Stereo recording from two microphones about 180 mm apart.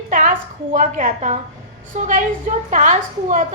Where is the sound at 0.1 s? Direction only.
50° right (ahead or behind).